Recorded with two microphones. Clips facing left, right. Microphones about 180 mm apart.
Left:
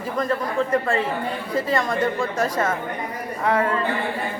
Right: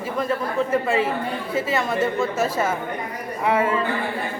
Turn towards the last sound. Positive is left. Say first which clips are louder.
# right 1 dB
turn(degrees=-5)  # may be behind; listen again after turning